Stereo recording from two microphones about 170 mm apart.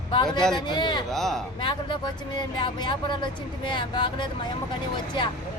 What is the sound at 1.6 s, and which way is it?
Speech, 30° left (ahead or behind).